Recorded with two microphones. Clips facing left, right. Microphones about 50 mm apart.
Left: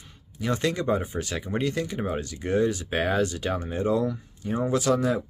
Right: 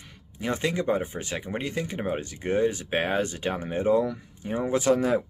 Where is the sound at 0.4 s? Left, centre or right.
Right.